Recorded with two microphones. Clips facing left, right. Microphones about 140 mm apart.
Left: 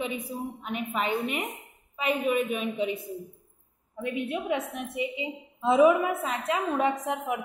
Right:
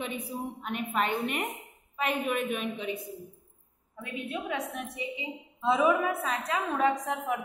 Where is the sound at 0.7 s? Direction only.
5° left (ahead or behind).